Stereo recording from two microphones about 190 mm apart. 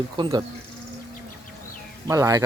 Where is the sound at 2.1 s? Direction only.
15° right (ahead or behind).